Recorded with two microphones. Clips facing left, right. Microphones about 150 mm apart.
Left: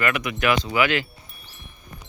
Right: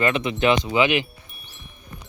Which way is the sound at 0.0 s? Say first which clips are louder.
Right 3 dB; 25° right (ahead or behind).